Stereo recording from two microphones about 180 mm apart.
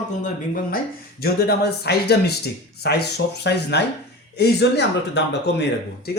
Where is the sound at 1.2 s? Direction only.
60° left (ahead or behind).